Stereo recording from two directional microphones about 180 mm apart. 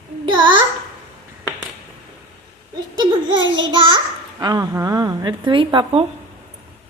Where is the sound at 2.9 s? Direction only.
25° right (ahead or behind).